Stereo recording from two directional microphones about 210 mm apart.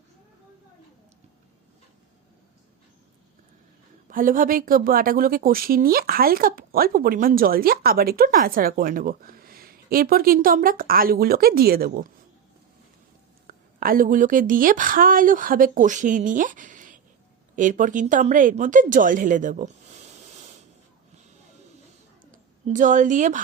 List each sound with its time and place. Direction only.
4.1 s speech: 40° right (ahead or behind)
13.5 s a woman's voice: 40° right (ahead or behind)
22.6 s a woman's voice: 35° right (ahead or behind)